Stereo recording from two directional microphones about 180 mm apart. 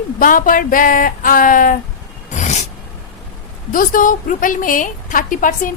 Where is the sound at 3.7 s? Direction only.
50° left (ahead or behind).